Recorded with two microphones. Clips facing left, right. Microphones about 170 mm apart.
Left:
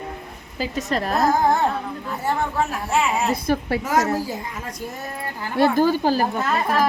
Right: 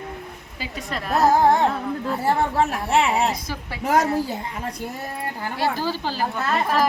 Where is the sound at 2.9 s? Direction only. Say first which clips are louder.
Right 1 dB; 30° right (ahead or behind).